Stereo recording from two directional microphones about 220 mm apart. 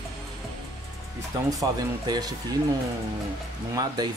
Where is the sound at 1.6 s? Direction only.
15° right (ahead or behind).